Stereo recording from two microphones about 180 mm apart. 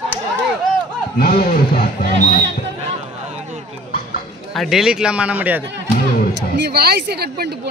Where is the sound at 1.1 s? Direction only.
55° left (ahead or behind).